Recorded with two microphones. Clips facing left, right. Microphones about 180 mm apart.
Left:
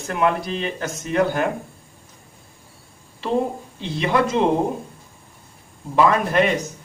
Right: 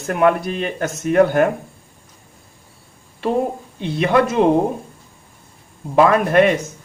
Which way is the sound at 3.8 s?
55° right (ahead or behind).